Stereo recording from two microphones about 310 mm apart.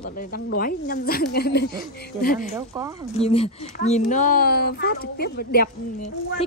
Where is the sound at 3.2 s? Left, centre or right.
Centre.